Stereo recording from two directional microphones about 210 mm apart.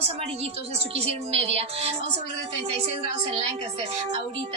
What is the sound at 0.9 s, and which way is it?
Speech, 30° right (ahead or behind).